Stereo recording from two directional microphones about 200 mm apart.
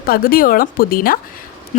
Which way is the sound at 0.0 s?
45° left (ahead or behind).